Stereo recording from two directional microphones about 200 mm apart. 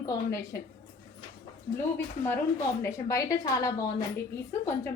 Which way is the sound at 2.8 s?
15° left (ahead or behind).